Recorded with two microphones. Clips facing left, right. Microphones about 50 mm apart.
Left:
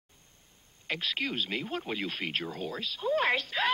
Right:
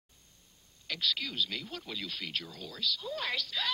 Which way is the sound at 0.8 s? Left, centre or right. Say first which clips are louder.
Left 2 dB; left.